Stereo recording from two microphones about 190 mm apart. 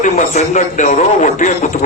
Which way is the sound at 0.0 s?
40° left (ahead or behind).